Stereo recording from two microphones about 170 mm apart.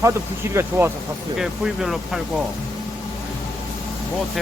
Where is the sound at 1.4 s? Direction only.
Centre (ahead or behind).